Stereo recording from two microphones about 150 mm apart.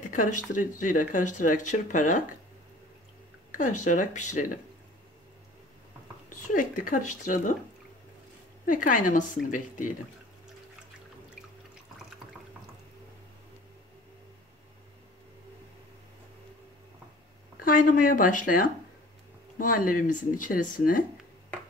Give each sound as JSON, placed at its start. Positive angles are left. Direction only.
{"t": 0.1, "sound": "speech", "side_deg": 60}
{"t": 3.5, "sound": "speech", "side_deg": 55}
{"t": 6.4, "sound": "speech", "side_deg": 65}
{"t": 8.6, "sound": "speech", "side_deg": 60}
{"t": 17.6, "sound": "speech", "side_deg": 65}